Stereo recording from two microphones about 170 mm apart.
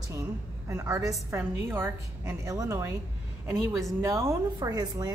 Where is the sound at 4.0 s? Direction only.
15° right (ahead or behind).